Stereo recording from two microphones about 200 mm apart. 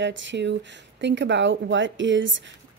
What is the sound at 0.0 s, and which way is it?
A woman's voice, 65° right (ahead or behind).